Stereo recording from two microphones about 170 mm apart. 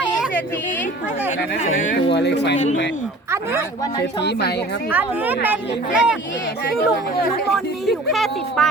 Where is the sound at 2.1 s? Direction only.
85° left.